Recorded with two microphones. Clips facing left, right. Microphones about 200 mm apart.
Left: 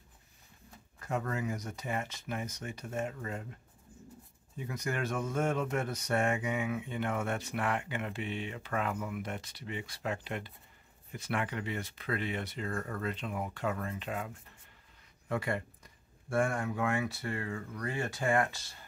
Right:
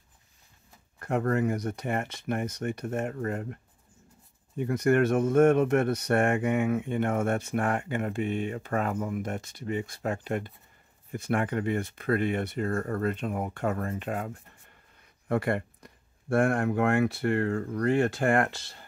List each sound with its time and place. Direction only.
0.9 s speech: 60° right (ahead or behind)
4.6 s speech: 60° right (ahead or behind)
17.8 s speech: 65° right (ahead or behind)